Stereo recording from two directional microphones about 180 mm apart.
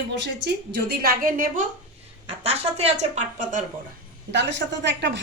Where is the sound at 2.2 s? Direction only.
35° right (ahead or behind).